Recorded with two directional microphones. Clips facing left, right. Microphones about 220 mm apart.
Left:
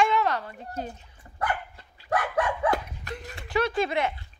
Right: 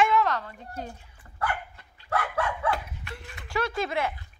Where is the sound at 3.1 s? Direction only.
40° left (ahead or behind).